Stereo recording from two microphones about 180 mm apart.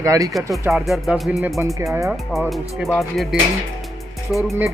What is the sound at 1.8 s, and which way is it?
Speech, 15° right (ahead or behind).